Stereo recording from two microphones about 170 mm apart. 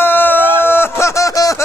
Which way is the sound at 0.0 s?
10° left (ahead or behind).